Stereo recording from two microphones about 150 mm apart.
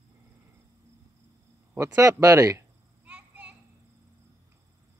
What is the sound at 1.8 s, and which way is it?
Speech, 20° right (ahead or behind).